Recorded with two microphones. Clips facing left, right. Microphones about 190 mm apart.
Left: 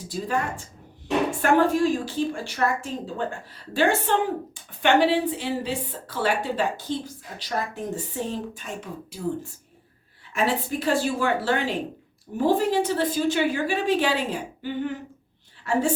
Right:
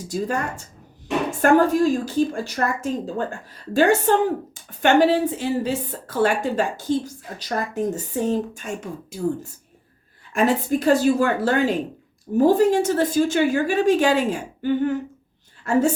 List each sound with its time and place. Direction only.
0.1 s a woman's voice: 45° right (ahead or behind)
10.3 s a woman's voice: 45° right (ahead or behind)